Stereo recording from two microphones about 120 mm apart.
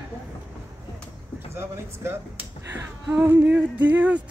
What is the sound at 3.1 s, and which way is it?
Music, 15° right (ahead or behind).